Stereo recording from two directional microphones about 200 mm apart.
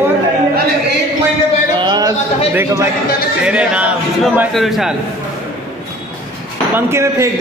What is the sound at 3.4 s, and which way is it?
A man's voice, 5° right (ahead or behind).